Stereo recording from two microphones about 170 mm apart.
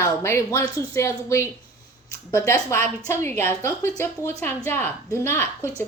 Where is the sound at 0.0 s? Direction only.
15° left (ahead or behind).